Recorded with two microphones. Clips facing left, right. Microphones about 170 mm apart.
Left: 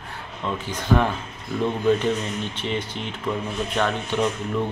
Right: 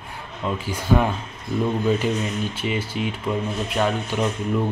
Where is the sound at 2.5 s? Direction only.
10° right (ahead or behind).